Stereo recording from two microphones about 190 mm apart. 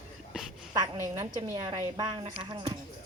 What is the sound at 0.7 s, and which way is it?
A woman's voice, 20° right (ahead or behind).